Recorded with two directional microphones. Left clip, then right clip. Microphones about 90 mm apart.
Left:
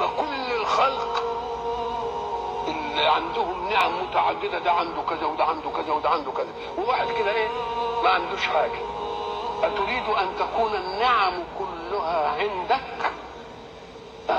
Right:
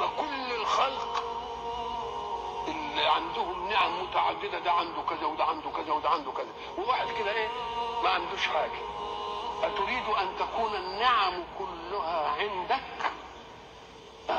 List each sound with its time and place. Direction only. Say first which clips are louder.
0.0 s speech: left 5 dB; 20° right (ahead or behind)